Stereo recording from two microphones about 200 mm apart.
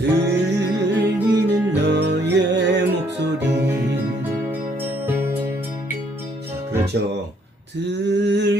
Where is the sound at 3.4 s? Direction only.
10° right (ahead or behind).